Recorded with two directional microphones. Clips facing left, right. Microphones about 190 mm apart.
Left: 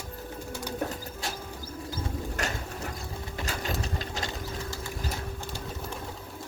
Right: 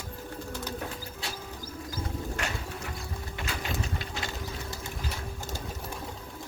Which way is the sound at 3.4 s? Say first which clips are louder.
Left 1 dB; 40° left (ahead or behind).